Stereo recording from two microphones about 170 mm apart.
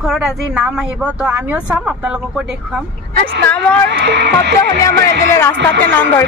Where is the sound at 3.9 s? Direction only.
80° right.